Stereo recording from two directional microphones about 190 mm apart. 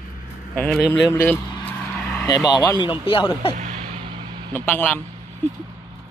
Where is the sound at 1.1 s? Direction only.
10° left (ahead or behind).